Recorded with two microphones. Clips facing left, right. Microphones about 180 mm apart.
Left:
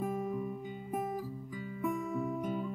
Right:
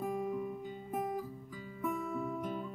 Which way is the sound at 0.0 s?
Centre (ahead or behind).